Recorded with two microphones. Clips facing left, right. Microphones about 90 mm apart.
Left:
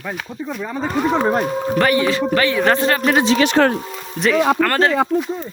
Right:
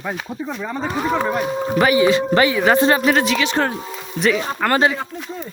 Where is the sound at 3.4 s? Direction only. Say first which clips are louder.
Left 5 dB; 65° left (ahead or behind).